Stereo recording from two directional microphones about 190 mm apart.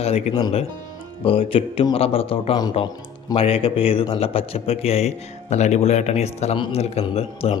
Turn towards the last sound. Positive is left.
turn(degrees=30)  # may be behind; listen again after turning